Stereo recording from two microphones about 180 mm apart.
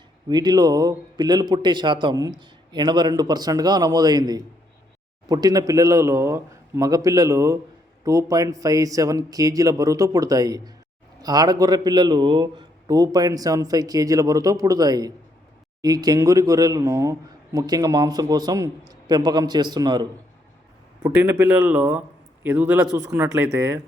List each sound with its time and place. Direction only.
0.3 s a man's voice: 20° right (ahead or behind)
21.0 s a man's voice: 10° right (ahead or behind)